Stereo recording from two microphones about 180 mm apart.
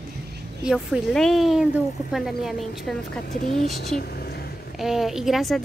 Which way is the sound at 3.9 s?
60° left (ahead or behind).